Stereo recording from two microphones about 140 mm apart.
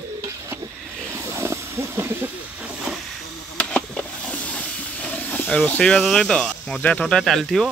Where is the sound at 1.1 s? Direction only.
20° right (ahead or behind).